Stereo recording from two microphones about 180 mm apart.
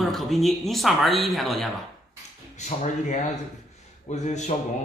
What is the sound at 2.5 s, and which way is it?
Speech, 40° left (ahead or behind).